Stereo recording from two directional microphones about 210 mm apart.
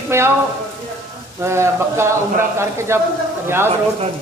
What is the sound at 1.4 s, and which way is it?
A woman's voice, 10° right (ahead or behind).